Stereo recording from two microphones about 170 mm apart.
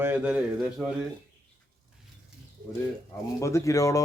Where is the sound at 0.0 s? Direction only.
10° right (ahead or behind).